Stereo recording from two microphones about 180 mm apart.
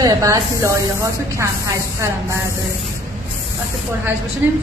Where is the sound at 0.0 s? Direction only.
20° right (ahead or behind).